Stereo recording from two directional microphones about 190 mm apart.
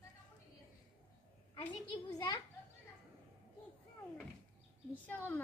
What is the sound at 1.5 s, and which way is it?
Speech, 25° left (ahead or behind).